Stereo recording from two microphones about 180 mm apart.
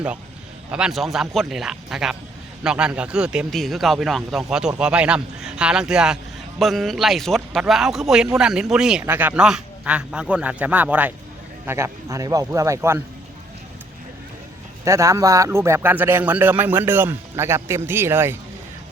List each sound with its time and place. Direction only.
0.7 s speech: 5° right (ahead or behind)
14.8 s speech: 15° right (ahead or behind)